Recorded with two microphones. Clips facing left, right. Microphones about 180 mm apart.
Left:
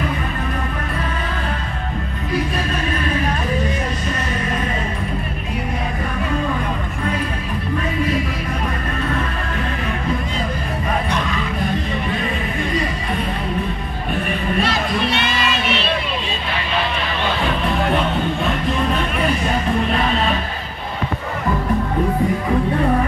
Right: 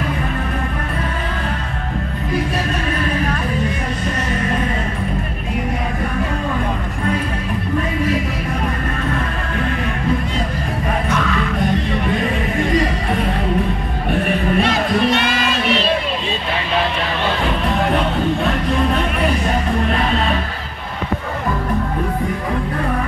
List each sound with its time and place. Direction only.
15.1 s child singing: 40° right (ahead or behind)